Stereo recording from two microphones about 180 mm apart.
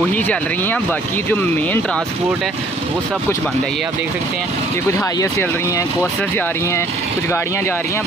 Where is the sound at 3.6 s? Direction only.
Centre (ahead or behind).